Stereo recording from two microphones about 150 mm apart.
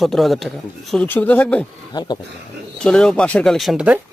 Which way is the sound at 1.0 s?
10° left (ahead or behind).